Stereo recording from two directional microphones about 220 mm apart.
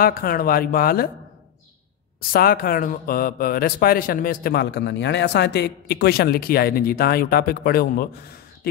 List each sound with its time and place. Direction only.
0.0 s speech: 40° left (ahead or behind)
2.1 s speech: 40° left (ahead or behind)